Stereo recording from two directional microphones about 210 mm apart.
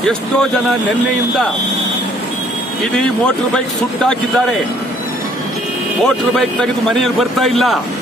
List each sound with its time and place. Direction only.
3.5 s a man's voice: 5° left (ahead or behind)
6.0 s a man's voice: centre (ahead or behind)